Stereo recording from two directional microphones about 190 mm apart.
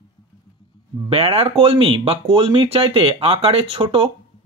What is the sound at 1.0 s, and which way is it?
Speech, 30° right (ahead or behind).